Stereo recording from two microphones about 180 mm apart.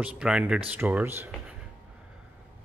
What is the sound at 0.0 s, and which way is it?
Speech, 5° right (ahead or behind).